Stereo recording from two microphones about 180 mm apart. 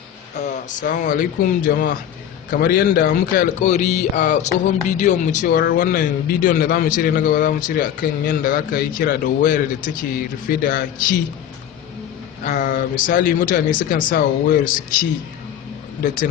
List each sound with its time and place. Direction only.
0.3 s speech: 45° left (ahead or behind)
5.5 s speech: 55° left (ahead or behind)
12.6 s speech: 50° left (ahead or behind)